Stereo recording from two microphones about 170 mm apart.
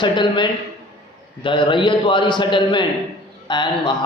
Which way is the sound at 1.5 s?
30° left (ahead or behind).